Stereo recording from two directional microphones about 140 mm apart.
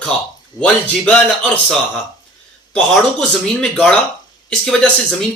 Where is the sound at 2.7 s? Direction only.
5° left (ahead or behind).